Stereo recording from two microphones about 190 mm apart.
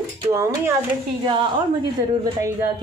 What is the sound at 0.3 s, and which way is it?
Speech, 15° right (ahead or behind).